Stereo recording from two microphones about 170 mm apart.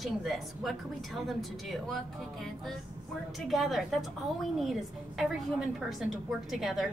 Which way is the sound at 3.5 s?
Centre (ahead or behind).